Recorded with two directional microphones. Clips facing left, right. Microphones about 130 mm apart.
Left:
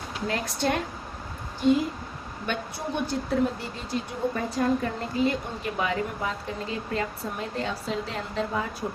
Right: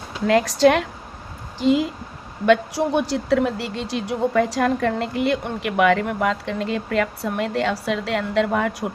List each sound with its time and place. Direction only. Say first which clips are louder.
0.3 s speech: right 12 dB; 90° right; by 8.7 s 75° right (ahead or behind)